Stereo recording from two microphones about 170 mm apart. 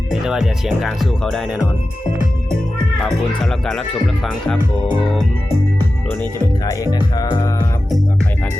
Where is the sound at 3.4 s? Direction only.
5° left (ahead or behind).